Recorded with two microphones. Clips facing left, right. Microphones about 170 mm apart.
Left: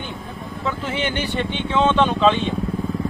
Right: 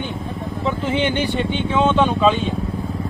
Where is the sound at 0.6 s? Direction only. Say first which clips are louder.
Right 4 dB; 15° right (ahead or behind).